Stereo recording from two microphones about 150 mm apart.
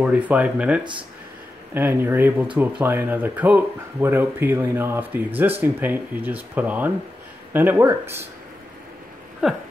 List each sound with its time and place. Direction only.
0.0 s speech: 10° right (ahead or behind)
9.4 s speech: 5° right (ahead or behind)